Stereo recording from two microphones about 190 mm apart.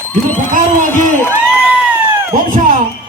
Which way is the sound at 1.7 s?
5° right (ahead or behind).